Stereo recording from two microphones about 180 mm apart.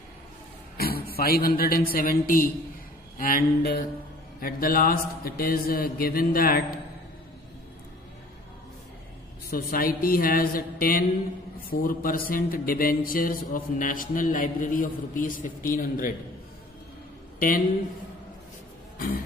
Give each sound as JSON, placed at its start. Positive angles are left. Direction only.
{"t": 0.7, "sound": "a man's voice", "side_deg": 55}
{"t": 9.5, "sound": "a man's voice", "side_deg": 55}
{"t": 18.9, "sound": "throat clearing", "side_deg": 55}